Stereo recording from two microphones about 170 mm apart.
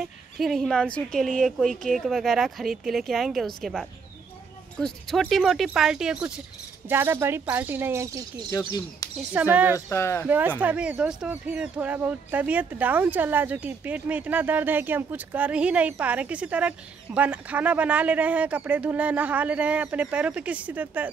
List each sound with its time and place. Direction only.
0.0 s speech: centre (ahead or behind); by 8.5 s 20° right (ahead or behind)
8.5 s speech: 20° left (ahead or behind)
9.3 s speech: 10° right (ahead or behind)
9.8 s speech: 15° left (ahead or behind)
10.2 s speech: 10° right (ahead or behind)